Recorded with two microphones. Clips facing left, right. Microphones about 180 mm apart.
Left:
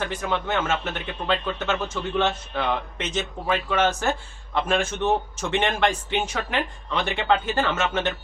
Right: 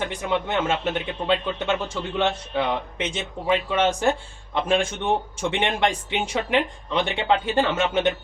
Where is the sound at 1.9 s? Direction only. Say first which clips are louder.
Even; 15° right (ahead or behind).